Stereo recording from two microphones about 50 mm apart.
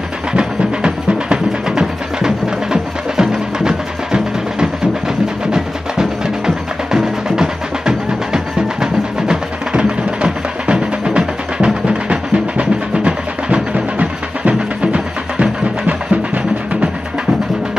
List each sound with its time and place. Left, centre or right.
0.3 s music: centre